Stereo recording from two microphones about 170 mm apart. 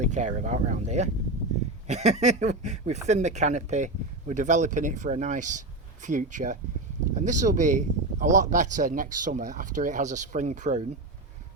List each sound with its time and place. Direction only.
0.0 s speech: 45° right (ahead or behind)